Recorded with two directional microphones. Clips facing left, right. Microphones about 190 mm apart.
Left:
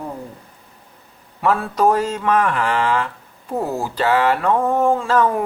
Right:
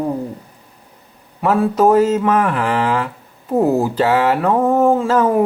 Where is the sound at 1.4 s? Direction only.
20° right (ahead or behind).